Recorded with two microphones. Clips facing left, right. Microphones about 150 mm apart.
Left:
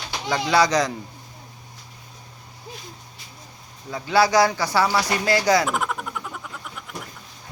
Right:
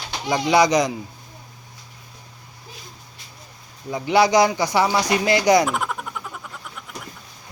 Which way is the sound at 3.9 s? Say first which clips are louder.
Right 2 dB; 15° right (ahead or behind).